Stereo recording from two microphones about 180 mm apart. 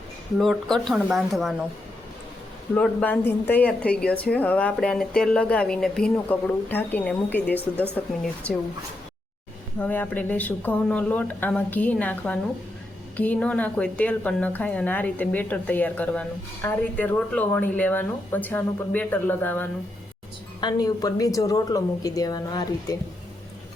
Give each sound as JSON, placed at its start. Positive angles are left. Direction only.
{"t": 0.3, "sound": "speech", "side_deg": 0}
{"t": 2.7, "sound": "speech", "side_deg": 5}
{"t": 9.7, "sound": "speech", "side_deg": 10}
{"t": 20.6, "sound": "speech", "side_deg": 20}